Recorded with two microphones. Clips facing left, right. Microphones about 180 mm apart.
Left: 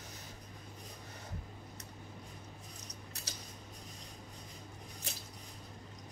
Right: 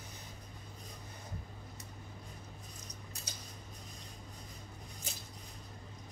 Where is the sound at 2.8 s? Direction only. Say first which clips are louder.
Left 1 dB; 70° left (ahead or behind).